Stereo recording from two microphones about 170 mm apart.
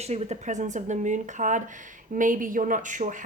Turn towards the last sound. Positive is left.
turn(degrees=-50)  # may be behind; listen again after turning